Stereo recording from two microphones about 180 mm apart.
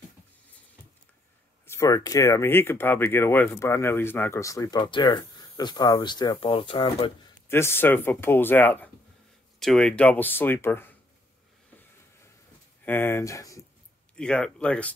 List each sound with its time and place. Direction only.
1.7 s speech: 15° left (ahead or behind)
7.4 s speech: 15° left (ahead or behind)
12.8 s speech: 10° left (ahead or behind)
14.1 s speech: 5° left (ahead or behind)